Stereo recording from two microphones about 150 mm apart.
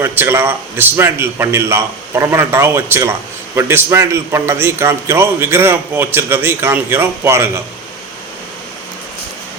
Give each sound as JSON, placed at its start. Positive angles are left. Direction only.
{"t": 0.0, "sound": "a man's voice", "side_deg": -15}